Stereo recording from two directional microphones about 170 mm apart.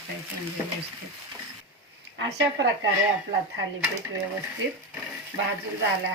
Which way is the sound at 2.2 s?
90° right.